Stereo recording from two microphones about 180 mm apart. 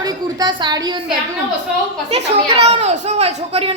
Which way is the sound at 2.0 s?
35° right (ahead or behind).